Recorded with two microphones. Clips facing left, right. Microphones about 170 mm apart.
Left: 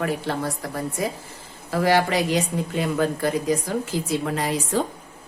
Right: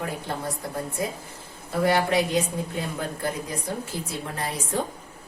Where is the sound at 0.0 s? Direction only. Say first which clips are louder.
Left 5 dB; 75° left (ahead or behind).